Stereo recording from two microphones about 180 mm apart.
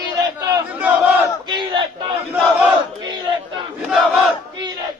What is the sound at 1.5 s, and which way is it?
Battle cry, 25° right (ahead or behind).